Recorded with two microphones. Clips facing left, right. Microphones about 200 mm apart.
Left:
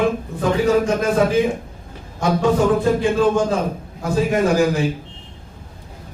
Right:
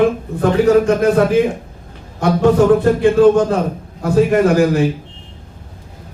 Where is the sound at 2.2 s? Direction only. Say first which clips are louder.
Right 5 dB; 60° right (ahead or behind).